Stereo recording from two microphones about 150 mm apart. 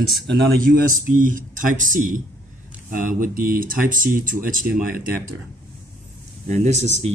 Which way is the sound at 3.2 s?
70° right (ahead or behind).